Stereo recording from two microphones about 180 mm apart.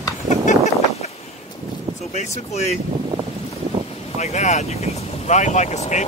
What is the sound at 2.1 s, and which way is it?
Speech, 40° left (ahead or behind).